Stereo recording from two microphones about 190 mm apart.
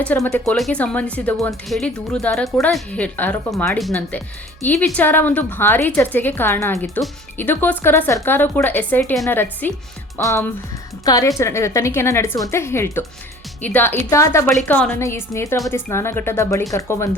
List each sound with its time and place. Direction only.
0.0 s a woman's voice: 5° left (ahead or behind)
6.7 s a woman's voice: centre (ahead or behind)